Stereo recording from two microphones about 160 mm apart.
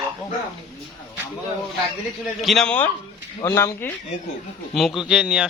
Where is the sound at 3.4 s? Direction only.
20° left (ahead or behind).